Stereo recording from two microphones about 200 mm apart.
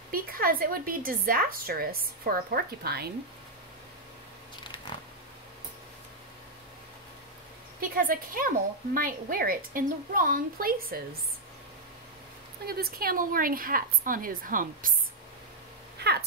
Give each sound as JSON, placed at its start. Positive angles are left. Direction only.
{"t": 0.1, "sound": "a woman's voice", "side_deg": -45}
{"t": 7.8, "sound": "a woman's voice", "side_deg": -45}
{"t": 12.6, "sound": "a woman's voice", "side_deg": -50}
{"t": 16.0, "sound": "speech", "side_deg": -55}